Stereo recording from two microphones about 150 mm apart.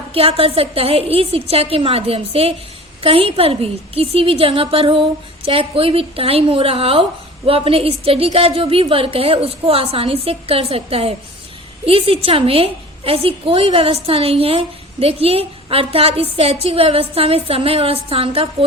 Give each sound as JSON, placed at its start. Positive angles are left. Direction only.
{"t": 0.1, "sound": "a woman's voice", "side_deg": -40}